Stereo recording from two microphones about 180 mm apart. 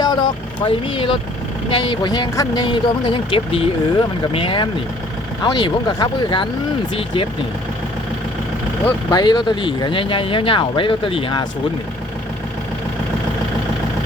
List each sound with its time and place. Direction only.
0.0 s vehicle: 25° left (ahead or behind)
1.7 s speech: 25° left (ahead or behind)
9.0 s speech: 25° left (ahead or behind)